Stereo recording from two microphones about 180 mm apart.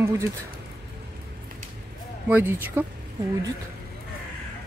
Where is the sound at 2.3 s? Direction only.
10° right (ahead or behind).